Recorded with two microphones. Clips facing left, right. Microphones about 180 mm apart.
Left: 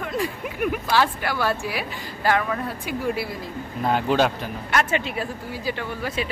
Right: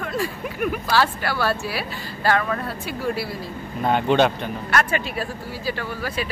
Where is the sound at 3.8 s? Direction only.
Centre (ahead or behind).